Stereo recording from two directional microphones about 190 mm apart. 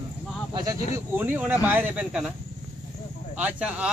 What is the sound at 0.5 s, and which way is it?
Speech, 20° right (ahead or behind).